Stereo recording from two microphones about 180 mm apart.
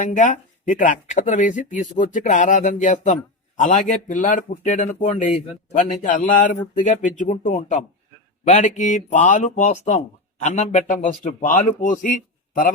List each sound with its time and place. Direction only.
0.0 s speech: 45° left (ahead or behind)